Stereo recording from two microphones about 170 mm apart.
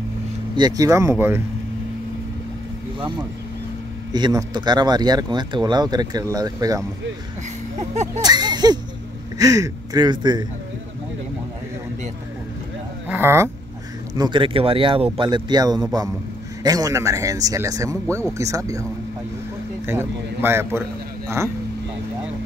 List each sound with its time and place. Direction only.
0.6 s a man's voice: 20° right (ahead or behind)
3.0 s speech: 30° right (ahead or behind)
7.8 s speech: 40° right (ahead or behind)
8.1 s a sound: 25° right (ahead or behind)
9.4 s speech: 20° right (ahead or behind)
13.1 s a man's voice: 15° right (ahead or behind)
14.1 s speech: 25° right (ahead or behind)
19.9 s a man's voice: 15° right (ahead or behind)